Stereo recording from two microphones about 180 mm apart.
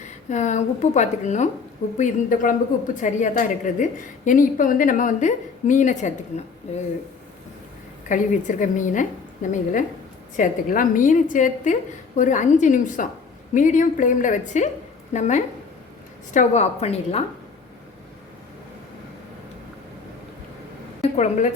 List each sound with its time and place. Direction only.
0.0 s a woman's voice: 40° left (ahead or behind)
8.0 s a woman's voice: 45° left (ahead or behind)
21.0 s a woman's voice: 40° left (ahead or behind)